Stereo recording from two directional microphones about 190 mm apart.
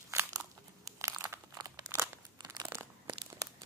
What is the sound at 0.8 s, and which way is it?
Crunch, 15° right (ahead or behind).